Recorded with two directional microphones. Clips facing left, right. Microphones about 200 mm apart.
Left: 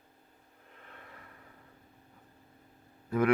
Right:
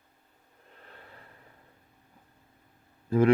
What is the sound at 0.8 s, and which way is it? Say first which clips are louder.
Snort: right 1 dB; 35° right (ahead or behind).